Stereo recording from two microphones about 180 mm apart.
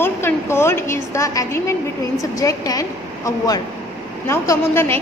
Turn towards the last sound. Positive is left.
turn(degrees=15)  # may be behind; listen again after turning